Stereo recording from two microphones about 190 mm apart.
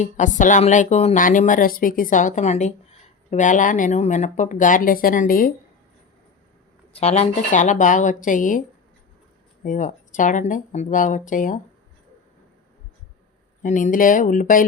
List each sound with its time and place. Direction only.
0.0 s speech: 40° left (ahead or behind)
6.9 s speech: 35° left (ahead or behind)
9.6 s speech: 40° left (ahead or behind)
13.6 s speech: 40° left (ahead or behind)